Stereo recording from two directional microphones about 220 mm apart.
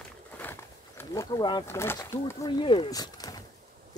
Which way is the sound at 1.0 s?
15° left (ahead or behind).